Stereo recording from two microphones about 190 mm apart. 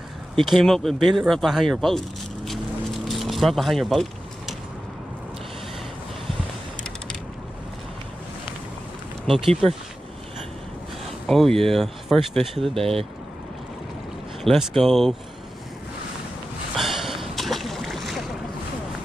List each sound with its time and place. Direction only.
0.4 s speech: centre (ahead or behind)
2.4 s vehicle: centre (ahead or behind)
9.2 s speech: centre (ahead or behind)
11.2 s speech: centre (ahead or behind)
12.7 s speech: 30° right (ahead or behind)
14.4 s speech: centre (ahead or behind)
16.7 s boat: centre (ahead or behind)